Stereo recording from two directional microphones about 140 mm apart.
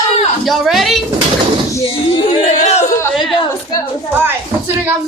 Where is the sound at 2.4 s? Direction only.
55° left (ahead or behind).